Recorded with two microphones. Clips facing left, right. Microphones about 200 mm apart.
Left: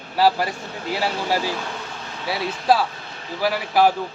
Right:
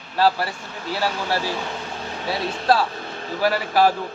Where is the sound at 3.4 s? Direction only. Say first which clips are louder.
Even; 10° left (ahead or behind).